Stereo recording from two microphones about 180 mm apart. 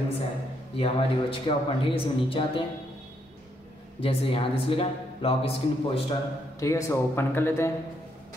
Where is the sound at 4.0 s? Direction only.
30° left (ahead or behind).